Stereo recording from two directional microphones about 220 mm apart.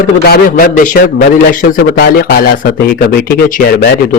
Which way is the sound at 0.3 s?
40° left (ahead or behind).